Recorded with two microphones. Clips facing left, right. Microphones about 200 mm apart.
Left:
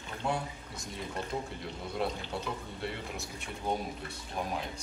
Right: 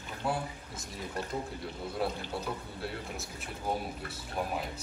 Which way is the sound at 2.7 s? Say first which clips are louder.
Even; centre (ahead or behind).